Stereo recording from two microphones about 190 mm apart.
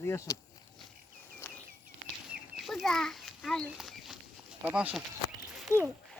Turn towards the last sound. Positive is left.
turn(degrees=-15)  # may be behind; listen again after turning